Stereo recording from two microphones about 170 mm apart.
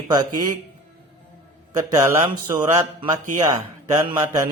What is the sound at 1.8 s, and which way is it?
Speech, 15° right (ahead or behind).